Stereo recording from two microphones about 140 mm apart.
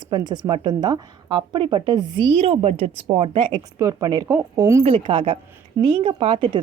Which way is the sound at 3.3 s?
35° right (ahead or behind).